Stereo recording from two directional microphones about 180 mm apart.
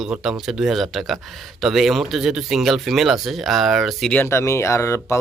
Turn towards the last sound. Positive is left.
turn(degrees=15)  # may be behind; listen again after turning